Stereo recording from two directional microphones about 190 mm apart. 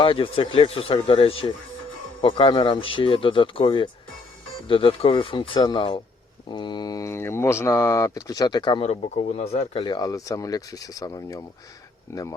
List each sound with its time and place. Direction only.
0.0 s speech: 25° left (ahead or behind)